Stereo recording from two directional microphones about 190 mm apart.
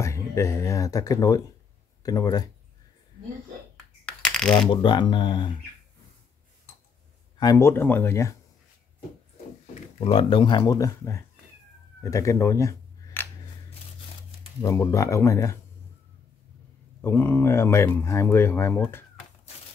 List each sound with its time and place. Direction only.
0.0 s speech: 15° left (ahead or behind)
4.0 s finger snapping: 5° left (ahead or behind)
4.6 s speech: 25° left (ahead or behind)
7.3 s speech: 15° left (ahead or behind)
10.1 s speech: 25° left (ahead or behind)
12.0 s camera: 15° left (ahead or behind)
14.6 s speech: 15° left (ahead or behind)
17.0 s speech: 10° left (ahead or behind)